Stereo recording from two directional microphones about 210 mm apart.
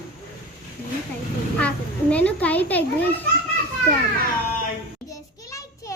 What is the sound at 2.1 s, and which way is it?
Speech, 5° left (ahead or behind).